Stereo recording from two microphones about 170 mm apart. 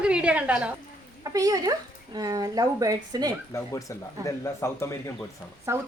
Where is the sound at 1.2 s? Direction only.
20° right (ahead or behind).